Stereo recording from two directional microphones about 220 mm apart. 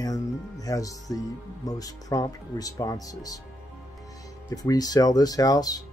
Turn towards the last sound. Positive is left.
turn(degrees=15)  # may be behind; listen again after turning